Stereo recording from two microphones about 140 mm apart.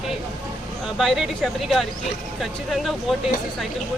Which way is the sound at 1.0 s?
Centre (ahead or behind).